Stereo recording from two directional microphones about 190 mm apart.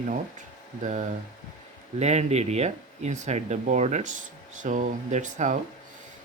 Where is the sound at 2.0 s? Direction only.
35° right (ahead or behind).